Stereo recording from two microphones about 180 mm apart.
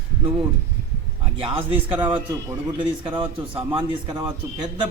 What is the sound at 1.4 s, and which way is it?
A man's voice, 30° right (ahead or behind).